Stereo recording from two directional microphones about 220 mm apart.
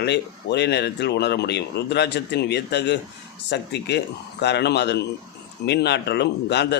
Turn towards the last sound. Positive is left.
turn(degrees=50)  # may be behind; listen again after turning